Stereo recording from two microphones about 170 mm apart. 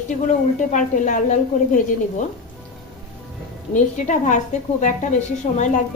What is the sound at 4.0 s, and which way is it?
Speech, 45° left (ahead or behind).